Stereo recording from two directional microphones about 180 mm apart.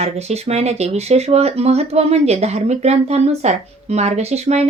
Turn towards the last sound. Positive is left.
turn(degrees=-35)  # may be behind; listen again after turning